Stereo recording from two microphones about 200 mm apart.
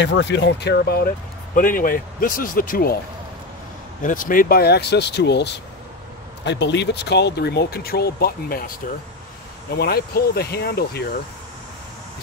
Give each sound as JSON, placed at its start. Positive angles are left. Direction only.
{"t": 0.0, "sound": "speech", "side_deg": 60}
{"t": 4.0, "sound": "speech", "side_deg": 40}
{"t": 9.8, "sound": "speech", "side_deg": 50}